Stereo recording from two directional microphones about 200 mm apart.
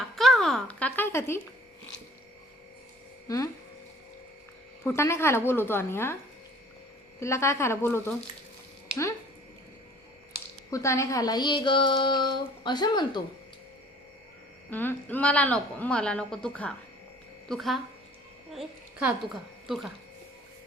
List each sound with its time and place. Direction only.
0.2 s a sound: centre (ahead or behind)
3.2 s speech: 15° left (ahead or behind)
4.8 s a woman's voice: 10° left (ahead or behind)
7.2 s a woman's voice: 15° left (ahead or behind)
10.7 s speech: 15° left (ahead or behind)
14.7 s a woman's voice: 10° left (ahead or behind)